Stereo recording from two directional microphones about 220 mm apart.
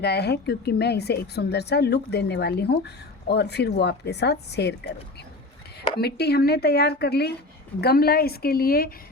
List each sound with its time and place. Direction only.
0.0 s a woman's voice: 50° left (ahead or behind)
6.0 s a woman's voice: 45° left (ahead or behind)